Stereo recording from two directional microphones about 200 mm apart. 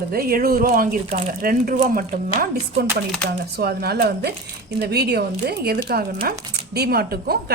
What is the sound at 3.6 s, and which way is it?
A woman's voice, 55° right (ahead or behind).